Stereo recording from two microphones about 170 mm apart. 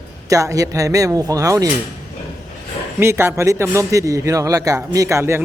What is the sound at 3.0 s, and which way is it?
A man's voice, 15° right (ahead or behind).